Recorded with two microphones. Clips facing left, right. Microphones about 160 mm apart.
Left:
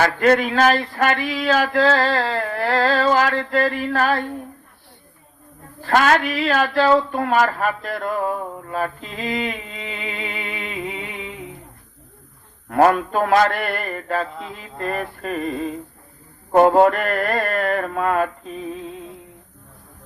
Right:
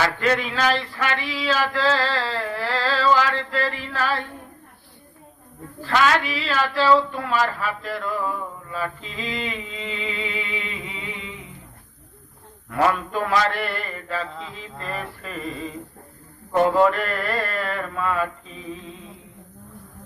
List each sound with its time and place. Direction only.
0.0 s speech: 50° left (ahead or behind)
5.8 s speech: 50° left (ahead or behind)
12.6 s speech: 50° left (ahead or behind)